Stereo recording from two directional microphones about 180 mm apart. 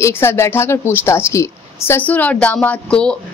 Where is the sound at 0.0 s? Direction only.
15° left (ahead or behind).